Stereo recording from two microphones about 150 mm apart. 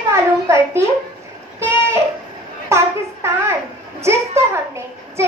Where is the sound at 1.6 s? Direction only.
15° right (ahead or behind).